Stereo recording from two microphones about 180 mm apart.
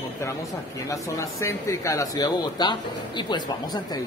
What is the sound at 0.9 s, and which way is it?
Speech, 15° left (ahead or behind).